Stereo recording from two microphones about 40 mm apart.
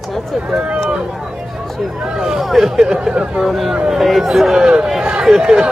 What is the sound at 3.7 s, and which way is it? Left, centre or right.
Speech, centre.